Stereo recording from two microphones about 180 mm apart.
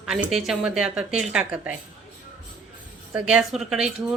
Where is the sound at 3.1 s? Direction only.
5° right (ahead or behind).